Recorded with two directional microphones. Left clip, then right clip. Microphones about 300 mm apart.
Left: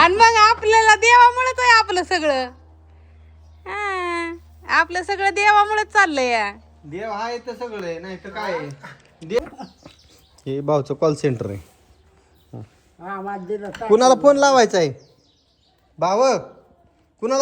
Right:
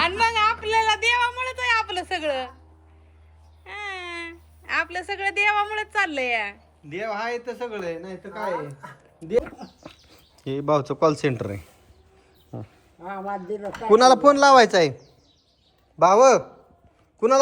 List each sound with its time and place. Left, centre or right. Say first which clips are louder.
0.2 s a sound: left 8 dB; centre
3.6 s babbling: left 8 dB; centre
4.1 s a woman's voice: left 9 dB; centre
8.6 s speech: left 3 dB; centre
9.4 s speech: left 2 dB; centre
16.0 s a man's voice: right 3 dB; centre